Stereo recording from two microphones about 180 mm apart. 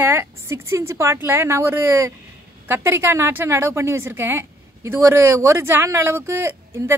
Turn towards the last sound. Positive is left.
turn(degrees=-15)  # may be behind; listen again after turning